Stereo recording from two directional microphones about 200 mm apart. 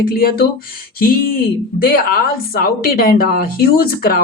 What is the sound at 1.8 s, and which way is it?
A woman's voice, 45° left (ahead or behind).